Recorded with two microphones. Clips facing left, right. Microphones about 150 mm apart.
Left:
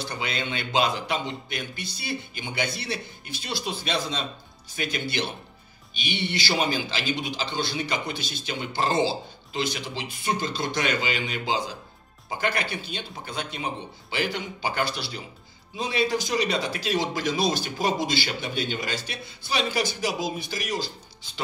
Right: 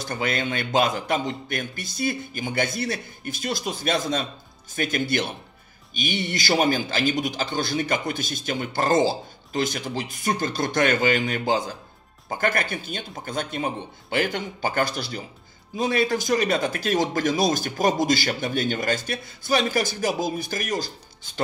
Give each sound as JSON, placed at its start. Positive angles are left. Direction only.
{"t": 0.0, "sound": "a man's voice", "side_deg": -50}